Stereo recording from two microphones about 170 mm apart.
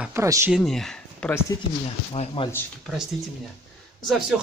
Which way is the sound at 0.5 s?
Centre (ahead or behind).